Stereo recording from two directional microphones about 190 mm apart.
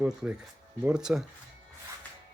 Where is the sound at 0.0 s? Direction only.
5° right (ahead or behind).